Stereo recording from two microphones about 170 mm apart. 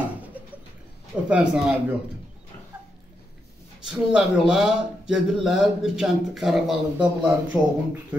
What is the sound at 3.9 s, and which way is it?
A man's voice, 5° right (ahead or behind).